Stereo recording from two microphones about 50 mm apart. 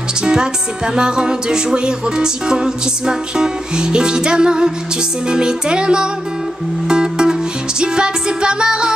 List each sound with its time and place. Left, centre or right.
0.2 s music: centre